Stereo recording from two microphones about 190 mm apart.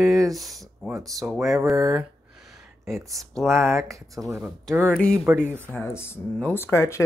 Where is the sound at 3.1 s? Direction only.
Centre (ahead or behind).